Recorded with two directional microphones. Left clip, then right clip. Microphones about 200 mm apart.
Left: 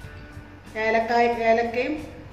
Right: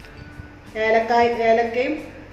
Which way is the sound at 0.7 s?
10° left (ahead or behind).